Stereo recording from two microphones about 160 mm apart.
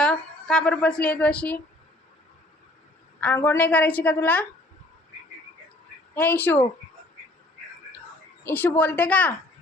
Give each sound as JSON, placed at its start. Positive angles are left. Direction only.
{"t": 0.0, "sound": "a woman's voice", "side_deg": 5}
{"t": 3.2, "sound": "a woman's voice", "side_deg": 10}
{"t": 6.1, "sound": "a woman's voice", "side_deg": 10}
{"t": 8.4, "sound": "a woman's voice", "side_deg": 10}